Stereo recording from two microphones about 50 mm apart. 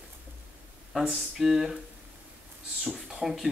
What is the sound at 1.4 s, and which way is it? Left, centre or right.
Speech, centre.